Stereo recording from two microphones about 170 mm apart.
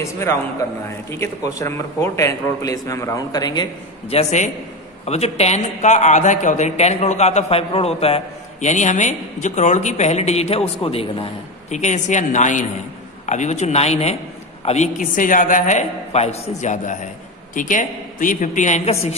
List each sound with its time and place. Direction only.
0.0 s a man's voice: 15° left (ahead or behind)
4.1 s a man's voice: 40° left (ahead or behind)
11.7 s a woman's voice: 45° left (ahead or behind)